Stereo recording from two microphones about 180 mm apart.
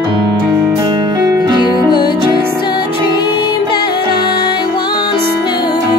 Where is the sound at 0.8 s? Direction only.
25° right (ahead or behind).